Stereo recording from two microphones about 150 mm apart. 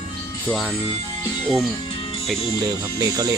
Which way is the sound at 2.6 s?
25° right (ahead or behind).